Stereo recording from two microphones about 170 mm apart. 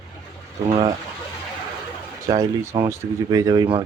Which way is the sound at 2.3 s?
20° right (ahead or behind).